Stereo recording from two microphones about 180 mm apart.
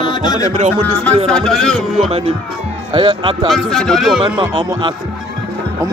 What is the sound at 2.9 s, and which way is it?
Speech, 25° right (ahead or behind).